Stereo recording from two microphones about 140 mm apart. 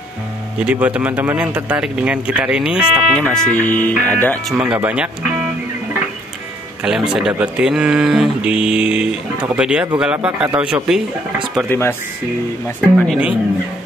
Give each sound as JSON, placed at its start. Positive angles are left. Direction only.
{"t": 0.6, "sound": "speech", "side_deg": -10}
{"t": 4.5, "sound": "speech", "side_deg": -5}
{"t": 6.8, "sound": "speech", "side_deg": -5}
{"t": 11.7, "sound": "speech", "side_deg": 15}
{"t": 12.9, "sound": "speech", "side_deg": 0}